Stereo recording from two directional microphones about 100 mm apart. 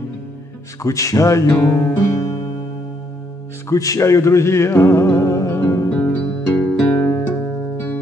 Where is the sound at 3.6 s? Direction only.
35° left (ahead or behind).